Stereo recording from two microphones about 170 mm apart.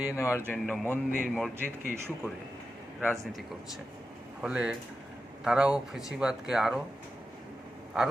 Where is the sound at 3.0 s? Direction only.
Centre (ahead or behind).